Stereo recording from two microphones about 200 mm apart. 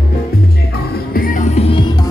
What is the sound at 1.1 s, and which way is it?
Music, 40° left (ahead or behind).